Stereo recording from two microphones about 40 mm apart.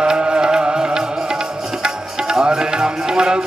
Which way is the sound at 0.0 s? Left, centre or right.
Right.